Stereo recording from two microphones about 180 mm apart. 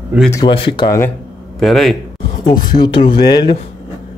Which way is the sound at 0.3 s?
25° left (ahead or behind).